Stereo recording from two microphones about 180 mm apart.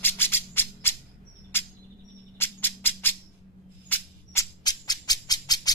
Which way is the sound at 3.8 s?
10° left (ahead or behind).